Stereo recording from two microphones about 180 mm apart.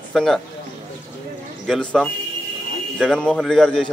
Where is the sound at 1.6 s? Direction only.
5° left (ahead or behind).